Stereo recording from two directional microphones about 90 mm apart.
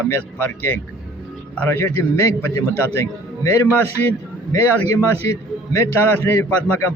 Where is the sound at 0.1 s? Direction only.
25° left (ahead or behind).